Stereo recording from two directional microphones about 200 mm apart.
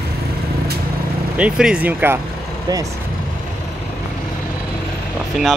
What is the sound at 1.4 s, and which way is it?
Speech, 5° right (ahead or behind).